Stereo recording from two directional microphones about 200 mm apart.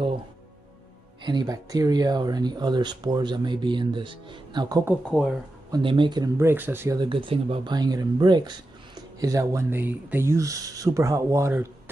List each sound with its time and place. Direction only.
1.2 s speech: 20° right (ahead or behind)